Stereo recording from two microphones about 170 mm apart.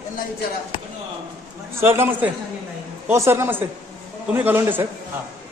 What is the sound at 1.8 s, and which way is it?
A woman's voice, 10° right (ahead or behind).